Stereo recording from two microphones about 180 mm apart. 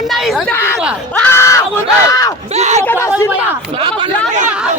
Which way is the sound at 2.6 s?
40° right (ahead or behind).